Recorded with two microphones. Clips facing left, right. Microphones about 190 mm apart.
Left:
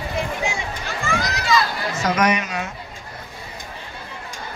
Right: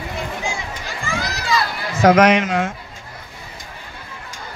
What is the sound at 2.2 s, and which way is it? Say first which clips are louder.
Speech: right 6 dB; 90° right.